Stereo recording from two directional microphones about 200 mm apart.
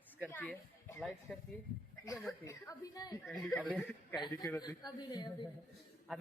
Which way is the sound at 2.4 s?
15° left (ahead or behind).